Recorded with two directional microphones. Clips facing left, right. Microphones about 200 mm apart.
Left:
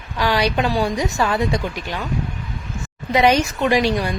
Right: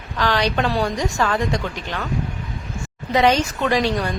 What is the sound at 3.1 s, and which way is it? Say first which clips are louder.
A woman's voice: left 1 dB; 10° left (ahead or behind).